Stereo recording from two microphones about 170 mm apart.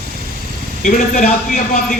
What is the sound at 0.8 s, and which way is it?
A man's voice, 50° left (ahead or behind).